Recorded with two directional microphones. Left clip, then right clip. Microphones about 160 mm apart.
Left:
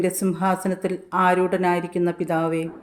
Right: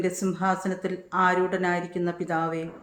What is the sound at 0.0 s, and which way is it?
A woman's voice, 40° left (ahead or behind).